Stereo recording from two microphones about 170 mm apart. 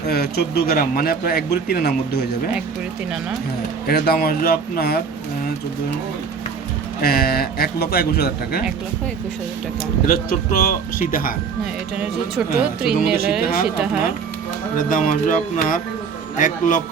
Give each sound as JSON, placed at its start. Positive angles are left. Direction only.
{"t": 0.1, "sound": "speech", "side_deg": 70}
{"t": 3.8, "sound": "speech", "side_deg": 65}
{"t": 7.0, "sound": "speech", "side_deg": 65}
{"t": 10.1, "sound": "speech", "side_deg": 60}
{"t": 11.6, "sound": "speech", "side_deg": -5}
{"t": 14.8, "sound": "speech", "side_deg": 55}